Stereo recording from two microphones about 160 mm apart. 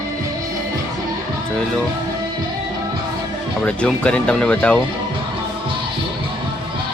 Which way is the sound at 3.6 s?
5° left (ahead or behind).